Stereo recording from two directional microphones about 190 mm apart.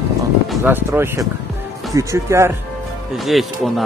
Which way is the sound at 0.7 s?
10° right (ahead or behind).